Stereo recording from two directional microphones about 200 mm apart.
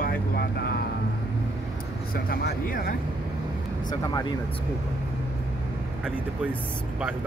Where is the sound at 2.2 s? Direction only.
50° left (ahead or behind).